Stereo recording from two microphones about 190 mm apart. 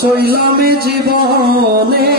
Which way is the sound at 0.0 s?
55° right (ahead or behind).